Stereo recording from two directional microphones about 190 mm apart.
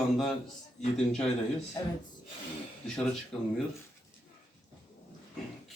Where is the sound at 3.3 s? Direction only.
5° left (ahead or behind).